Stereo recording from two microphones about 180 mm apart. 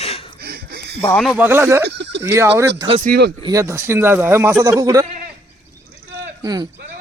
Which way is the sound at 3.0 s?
65° right (ahead or behind).